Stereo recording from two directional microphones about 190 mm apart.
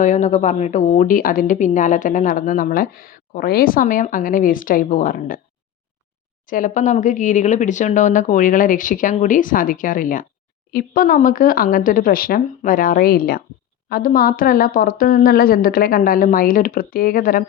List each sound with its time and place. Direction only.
0.0 s speech: 40° left (ahead or behind)
6.5 s speech: 45° left (ahead or behind)